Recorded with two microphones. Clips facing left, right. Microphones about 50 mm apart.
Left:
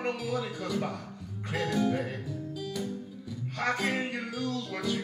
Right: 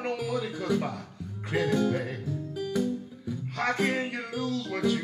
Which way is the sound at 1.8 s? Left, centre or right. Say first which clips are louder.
Right 1 dB; centre.